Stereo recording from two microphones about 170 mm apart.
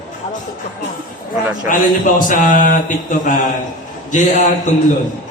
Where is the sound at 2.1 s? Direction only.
50° left (ahead or behind).